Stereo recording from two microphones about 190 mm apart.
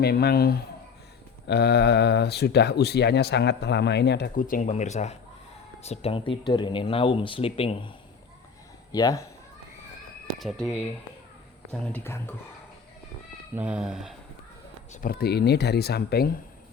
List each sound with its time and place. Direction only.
0.0 s speech: 55° left (ahead or behind)
4.4 s speech: 45° left (ahead or behind); by 7.9 s 30° left (ahead or behind)
8.9 s speech: 20° left (ahead or behind)
10.3 s speech: centre (ahead or behind)
13.6 s speech: 5° right (ahead or behind)
15.0 s speech: 55° left (ahead or behind)